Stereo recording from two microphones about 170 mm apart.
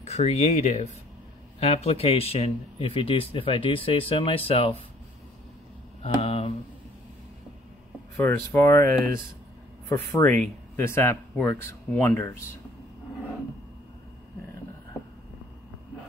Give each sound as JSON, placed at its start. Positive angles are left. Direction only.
{"t": 0.0, "sound": "speech", "side_deg": 40}
{"t": 6.1, "sound": "a sound", "side_deg": 35}
{"t": 8.2, "sound": "speech", "side_deg": 15}